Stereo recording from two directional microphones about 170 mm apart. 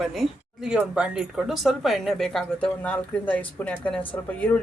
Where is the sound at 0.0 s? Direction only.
Centre (ahead or behind).